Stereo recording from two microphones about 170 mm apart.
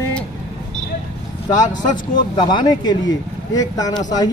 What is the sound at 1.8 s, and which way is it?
Speech, 25° left (ahead or behind).